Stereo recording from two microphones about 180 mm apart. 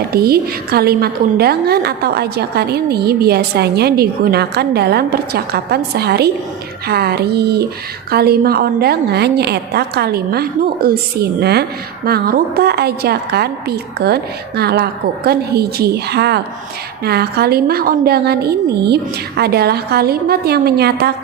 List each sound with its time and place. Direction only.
0.1 s a woman's voice: 60° right (ahead or behind)